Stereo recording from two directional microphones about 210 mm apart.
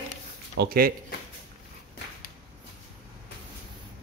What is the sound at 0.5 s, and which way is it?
Speech, 45° right (ahead or behind).